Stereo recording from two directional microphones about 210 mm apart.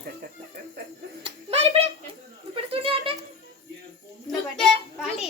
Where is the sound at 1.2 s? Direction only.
25° right (ahead or behind).